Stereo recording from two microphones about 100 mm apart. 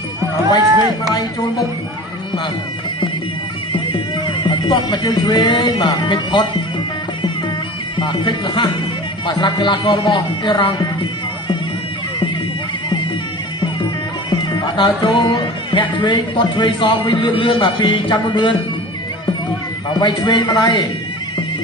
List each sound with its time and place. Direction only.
1.1 s music: 35° left (ahead or behind)
4.4 s speech: 50° left (ahead or behind)
7.9 s speech: 50° left (ahead or behind)
14.3 s speech: 50° left (ahead or behind)
19.9 s speech: 45° left (ahead or behind)